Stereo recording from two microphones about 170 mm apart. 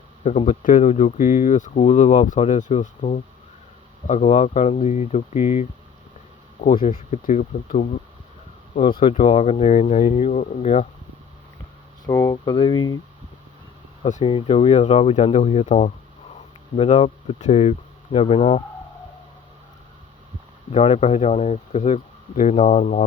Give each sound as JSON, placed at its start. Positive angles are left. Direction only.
{"t": 0.3, "sound": "speech", "side_deg": 40}
{"t": 6.8, "sound": "speech", "side_deg": 45}
{"t": 9.0, "sound": "speech", "side_deg": 35}
{"t": 12.0, "sound": "speech", "side_deg": 20}
{"t": 14.0, "sound": "speech", "side_deg": 35}
{"t": 20.7, "sound": "speech", "side_deg": 40}